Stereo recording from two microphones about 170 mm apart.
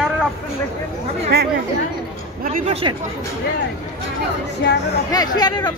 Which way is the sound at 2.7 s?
30° right (ahead or behind).